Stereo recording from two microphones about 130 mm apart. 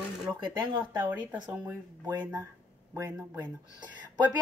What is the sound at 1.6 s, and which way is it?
Speech, 25° right (ahead or behind).